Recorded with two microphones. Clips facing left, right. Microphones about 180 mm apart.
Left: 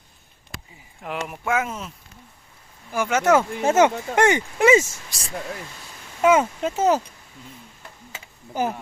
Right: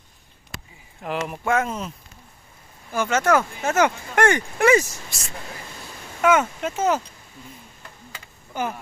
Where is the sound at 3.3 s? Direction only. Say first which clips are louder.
Left 3 dB; 25° left (ahead or behind).